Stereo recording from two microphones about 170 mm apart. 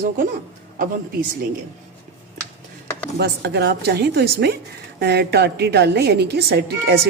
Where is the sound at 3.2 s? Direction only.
75° right (ahead or behind).